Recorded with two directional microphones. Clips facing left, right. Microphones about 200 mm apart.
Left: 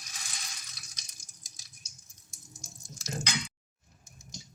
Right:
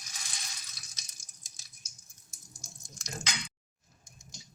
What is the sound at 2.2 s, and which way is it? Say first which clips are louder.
Drip: left 3 dB; 5° left (ahead or behind).